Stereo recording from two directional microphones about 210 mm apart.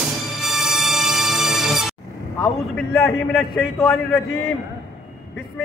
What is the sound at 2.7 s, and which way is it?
Speech, centre (ahead or behind).